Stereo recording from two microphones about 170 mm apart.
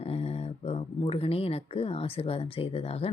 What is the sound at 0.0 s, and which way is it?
Speech, 35° left (ahead or behind).